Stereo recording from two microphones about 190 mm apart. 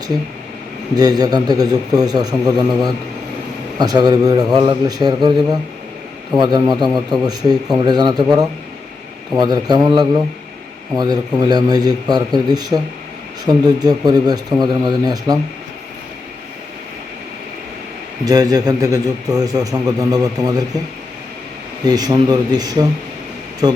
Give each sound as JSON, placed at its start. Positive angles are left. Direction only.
{"t": 0.9, "sound": "a man's voice", "side_deg": -20}
{"t": 3.8, "sound": "a man's voice", "side_deg": -20}
{"t": 9.4, "sound": "a man's voice", "side_deg": -20}
{"t": 18.3, "sound": "a man's voice", "side_deg": -20}
{"t": 21.8, "sound": "a man's voice", "side_deg": -20}